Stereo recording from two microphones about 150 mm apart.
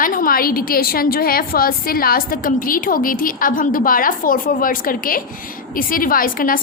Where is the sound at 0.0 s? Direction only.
70° left (ahead or behind).